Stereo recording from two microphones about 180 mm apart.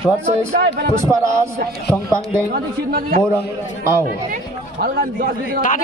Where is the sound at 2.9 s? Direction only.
55° right (ahead or behind).